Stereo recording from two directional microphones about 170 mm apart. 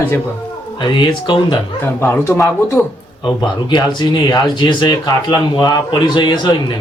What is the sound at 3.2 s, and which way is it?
Speech, 25° left (ahead or behind).